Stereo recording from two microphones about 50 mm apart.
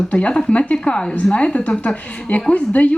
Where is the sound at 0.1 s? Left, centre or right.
Left.